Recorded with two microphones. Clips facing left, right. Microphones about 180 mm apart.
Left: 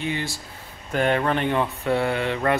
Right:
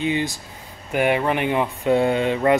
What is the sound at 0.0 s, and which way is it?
Speech, 20° right (ahead or behind).